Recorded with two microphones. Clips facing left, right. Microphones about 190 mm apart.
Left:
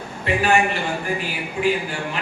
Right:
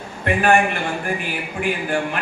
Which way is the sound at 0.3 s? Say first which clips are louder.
Right 2 dB; 55° right (ahead or behind).